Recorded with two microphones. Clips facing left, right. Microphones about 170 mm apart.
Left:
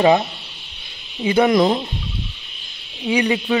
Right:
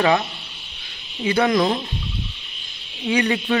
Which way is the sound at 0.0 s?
20° left (ahead or behind).